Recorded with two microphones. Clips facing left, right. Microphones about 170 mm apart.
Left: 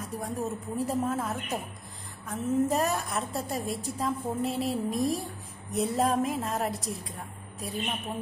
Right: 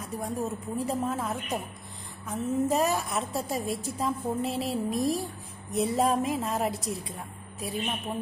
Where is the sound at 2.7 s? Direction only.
Centre (ahead or behind).